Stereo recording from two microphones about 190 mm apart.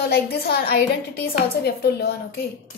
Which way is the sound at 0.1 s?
55° left (ahead or behind).